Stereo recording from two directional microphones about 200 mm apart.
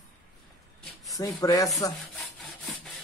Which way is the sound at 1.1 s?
15° left (ahead or behind).